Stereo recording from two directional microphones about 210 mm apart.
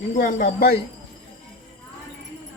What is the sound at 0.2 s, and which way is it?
Speech, 40° left (ahead or behind).